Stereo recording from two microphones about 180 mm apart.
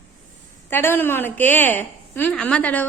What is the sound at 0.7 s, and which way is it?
A woman's voice, 10° left (ahead or behind).